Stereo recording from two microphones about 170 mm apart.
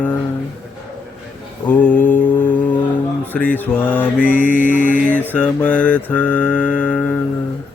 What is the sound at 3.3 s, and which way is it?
Mantra, 10° left (ahead or behind).